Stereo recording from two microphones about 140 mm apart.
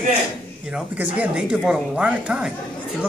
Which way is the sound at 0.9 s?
10° right (ahead or behind).